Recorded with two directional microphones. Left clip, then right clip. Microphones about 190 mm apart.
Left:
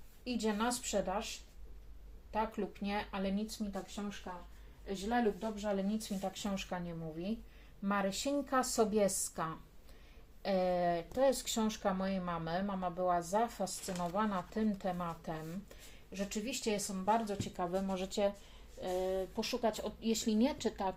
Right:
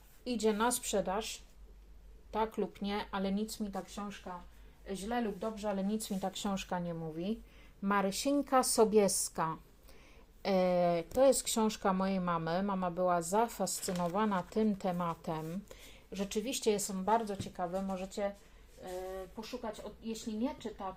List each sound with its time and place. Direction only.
0.3 s speech: 40° right (ahead or behind)
2.3 s speech: 45° right (ahead or behind)
3.7 s speech: 55° right (ahead or behind)
13.8 s speech: 35° right (ahead or behind)
14.2 s speech: 50° right (ahead or behind)
17.2 s speech: 15° right (ahead or behind)
17.6 s speech: centre (ahead or behind)
18.8 s speech: 60° left (ahead or behind)